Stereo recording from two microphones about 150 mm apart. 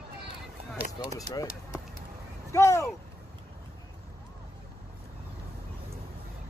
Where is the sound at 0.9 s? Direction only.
25° left (ahead or behind).